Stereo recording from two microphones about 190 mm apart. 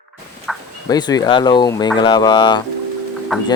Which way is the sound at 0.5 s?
Centre (ahead or behind).